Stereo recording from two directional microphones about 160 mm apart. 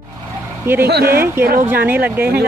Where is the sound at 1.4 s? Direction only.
70° right (ahead or behind).